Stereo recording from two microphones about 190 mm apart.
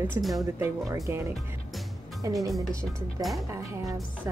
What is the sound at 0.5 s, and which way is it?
Speech, 10° right (ahead or behind).